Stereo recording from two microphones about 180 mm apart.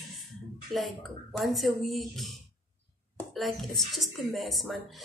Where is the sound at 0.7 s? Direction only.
Centre (ahead or behind).